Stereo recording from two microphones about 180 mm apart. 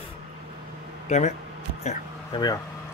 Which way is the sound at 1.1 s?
40° left (ahead or behind).